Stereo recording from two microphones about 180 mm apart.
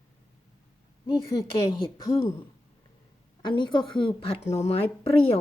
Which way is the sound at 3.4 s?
25° left (ahead or behind).